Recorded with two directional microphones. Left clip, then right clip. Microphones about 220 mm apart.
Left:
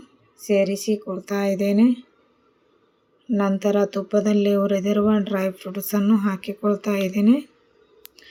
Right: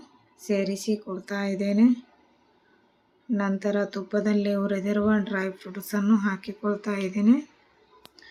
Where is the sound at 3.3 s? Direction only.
15° left (ahead or behind).